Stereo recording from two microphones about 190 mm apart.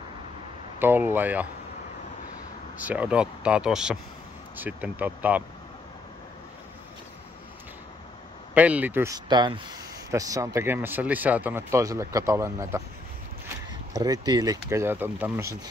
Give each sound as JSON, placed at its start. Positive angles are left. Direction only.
{"t": 0.7, "sound": "speech", "side_deg": -10}
{"t": 2.8, "sound": "speech", "side_deg": -10}
{"t": 8.5, "sound": "speech", "side_deg": -5}
{"t": 13.9, "sound": "speech", "side_deg": -20}